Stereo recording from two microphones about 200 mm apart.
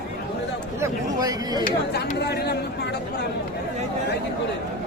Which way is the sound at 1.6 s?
50° left (ahead or behind).